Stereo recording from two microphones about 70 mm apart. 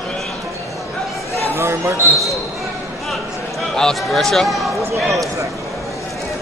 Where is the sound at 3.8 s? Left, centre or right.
Centre.